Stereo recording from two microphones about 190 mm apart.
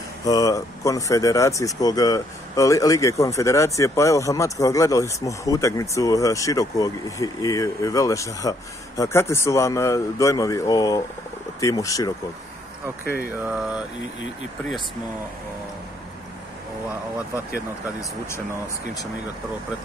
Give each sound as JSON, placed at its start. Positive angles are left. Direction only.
{"t": 0.2, "sound": "speech", "side_deg": 20}
{"t": 13.4, "sound": "mantra", "side_deg": -5}